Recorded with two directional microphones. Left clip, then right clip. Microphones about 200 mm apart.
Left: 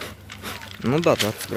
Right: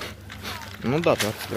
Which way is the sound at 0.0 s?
20° left (ahead or behind).